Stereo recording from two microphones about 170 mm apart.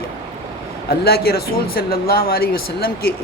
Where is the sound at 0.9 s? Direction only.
65° left (ahead or behind).